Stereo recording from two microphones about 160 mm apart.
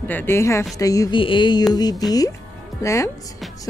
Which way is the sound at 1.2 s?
30° left (ahead or behind).